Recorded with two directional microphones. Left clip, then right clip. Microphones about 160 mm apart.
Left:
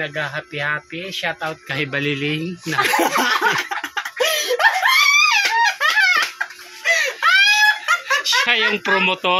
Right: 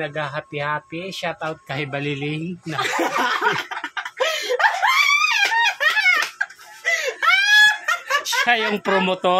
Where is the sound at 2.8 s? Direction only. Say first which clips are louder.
Left 4 dB; 55° left (ahead or behind).